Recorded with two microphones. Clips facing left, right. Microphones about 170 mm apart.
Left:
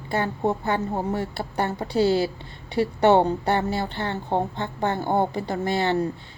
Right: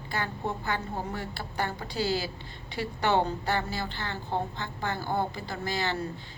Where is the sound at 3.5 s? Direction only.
25° left (ahead or behind).